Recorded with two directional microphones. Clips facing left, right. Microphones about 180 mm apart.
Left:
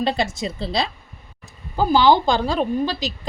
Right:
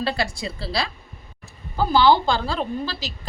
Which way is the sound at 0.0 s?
20° left (ahead or behind).